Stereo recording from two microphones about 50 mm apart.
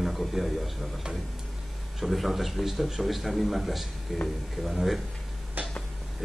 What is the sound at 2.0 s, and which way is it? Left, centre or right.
A man's voice, centre.